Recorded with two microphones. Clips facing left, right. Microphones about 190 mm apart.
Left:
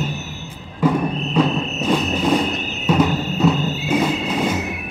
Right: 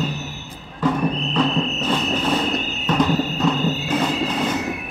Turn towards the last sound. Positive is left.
turn(degrees=10)  # may be behind; listen again after turning